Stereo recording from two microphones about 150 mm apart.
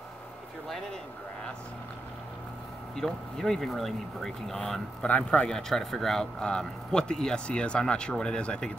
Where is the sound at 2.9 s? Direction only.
Centre (ahead or behind).